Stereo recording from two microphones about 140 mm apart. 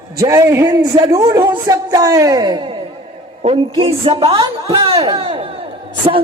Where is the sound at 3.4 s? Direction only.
45° right (ahead or behind).